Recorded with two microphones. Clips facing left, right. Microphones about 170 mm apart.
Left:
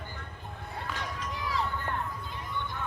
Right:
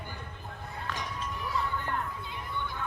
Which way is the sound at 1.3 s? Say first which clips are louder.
Left 2 dB; 90° left.